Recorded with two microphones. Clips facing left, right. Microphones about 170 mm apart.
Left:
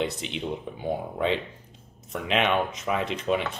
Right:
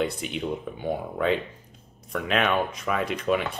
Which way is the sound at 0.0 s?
25° left (ahead or behind).